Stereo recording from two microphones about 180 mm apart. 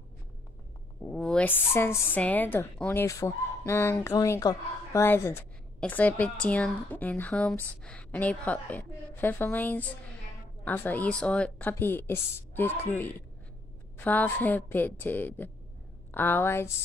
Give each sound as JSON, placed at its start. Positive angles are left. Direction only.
{"t": 1.0, "sound": "speech", "side_deg": 5}